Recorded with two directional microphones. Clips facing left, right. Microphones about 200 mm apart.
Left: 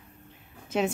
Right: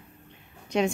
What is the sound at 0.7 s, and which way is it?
Speech, 5° left (ahead or behind).